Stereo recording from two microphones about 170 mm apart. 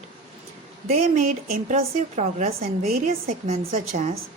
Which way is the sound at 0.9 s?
40° right (ahead or behind).